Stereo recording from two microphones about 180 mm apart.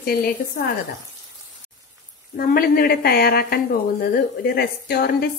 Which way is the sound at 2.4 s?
50° left (ahead or behind).